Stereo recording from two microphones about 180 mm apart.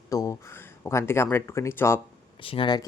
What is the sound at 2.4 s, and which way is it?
Speech, 30° left (ahead or behind).